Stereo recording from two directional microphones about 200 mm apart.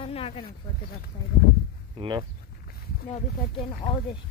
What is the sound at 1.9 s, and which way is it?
Speech, 20° right (ahead or behind).